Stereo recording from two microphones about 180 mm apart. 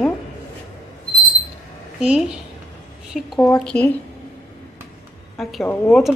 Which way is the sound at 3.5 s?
5° left (ahead or behind).